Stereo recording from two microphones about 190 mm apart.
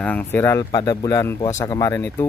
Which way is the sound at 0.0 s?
10° left (ahead or behind).